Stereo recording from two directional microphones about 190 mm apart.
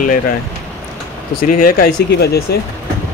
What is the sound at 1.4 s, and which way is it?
Speech, 50° left (ahead or behind).